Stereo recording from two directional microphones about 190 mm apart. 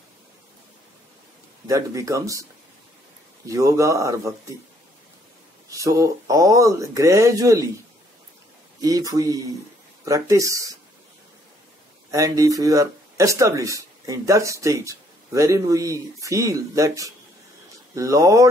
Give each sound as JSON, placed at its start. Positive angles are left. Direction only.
{"t": 1.7, "sound": "speech", "side_deg": -15}
{"t": 3.4, "sound": "speech", "side_deg": -15}
{"t": 5.7, "sound": "speech", "side_deg": -15}
{"t": 8.8, "sound": "speech", "side_deg": -20}
{"t": 12.1, "sound": "speech", "side_deg": -20}